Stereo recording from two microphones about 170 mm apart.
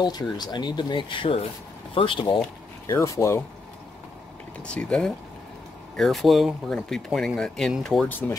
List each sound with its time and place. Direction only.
0.0 s speech: 25° left (ahead or behind)
2.9 s speech: 15° left (ahead or behind)
4.6 s speech: 5° left (ahead or behind)